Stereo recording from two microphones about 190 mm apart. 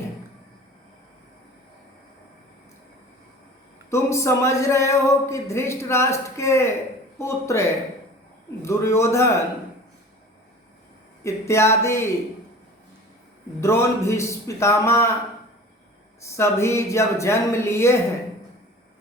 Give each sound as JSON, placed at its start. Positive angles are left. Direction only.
{"t": 3.8, "sound": "speech", "side_deg": 15}
{"t": 11.2, "sound": "speech", "side_deg": 15}
{"t": 13.6, "sound": "speech", "side_deg": 15}
{"t": 16.3, "sound": "speech", "side_deg": 15}